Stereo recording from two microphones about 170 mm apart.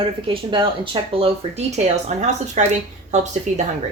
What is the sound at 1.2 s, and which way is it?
Speech, 40° right (ahead or behind).